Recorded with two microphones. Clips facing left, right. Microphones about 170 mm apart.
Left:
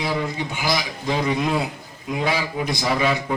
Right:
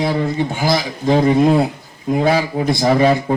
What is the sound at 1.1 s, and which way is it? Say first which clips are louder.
Speech: right 9 dB; 45° right (ahead or behind).